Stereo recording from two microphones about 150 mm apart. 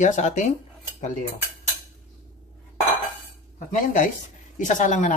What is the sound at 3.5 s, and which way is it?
Speech, 65° left (ahead or behind).